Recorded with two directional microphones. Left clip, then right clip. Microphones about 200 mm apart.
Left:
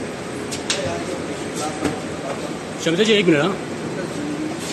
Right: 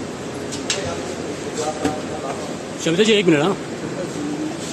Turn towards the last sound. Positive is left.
turn(degrees=-30)  # may be behind; listen again after turning